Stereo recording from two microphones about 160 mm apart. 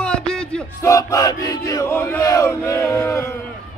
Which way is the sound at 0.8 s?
20° left (ahead or behind).